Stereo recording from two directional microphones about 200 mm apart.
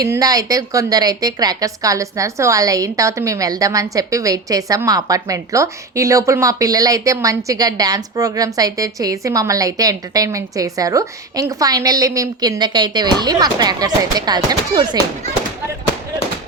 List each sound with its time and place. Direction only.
0.1 s a woman's voice: 20° right (ahead or behind)